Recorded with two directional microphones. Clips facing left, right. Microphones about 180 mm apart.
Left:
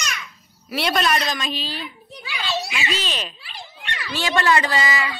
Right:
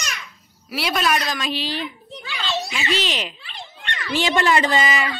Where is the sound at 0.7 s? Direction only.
5° right (ahead or behind).